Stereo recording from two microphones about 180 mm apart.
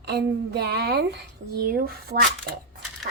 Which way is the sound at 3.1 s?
55° right (ahead or behind).